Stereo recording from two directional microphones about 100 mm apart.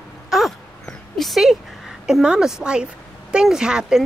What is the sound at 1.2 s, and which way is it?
Speech, centre (ahead or behind).